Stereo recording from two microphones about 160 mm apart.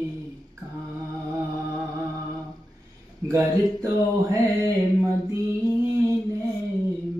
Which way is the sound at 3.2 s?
15° right (ahead or behind).